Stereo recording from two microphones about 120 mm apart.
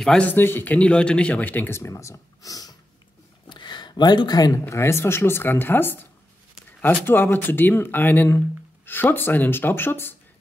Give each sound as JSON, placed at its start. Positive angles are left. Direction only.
{"t": 0.0, "sound": "a man's voice", "side_deg": 5}
{"t": 0.3, "sound": "speech", "side_deg": 15}
{"t": 3.4, "sound": "speech", "side_deg": 40}